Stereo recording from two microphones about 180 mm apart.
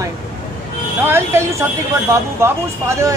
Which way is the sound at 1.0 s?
15° right (ahead or behind).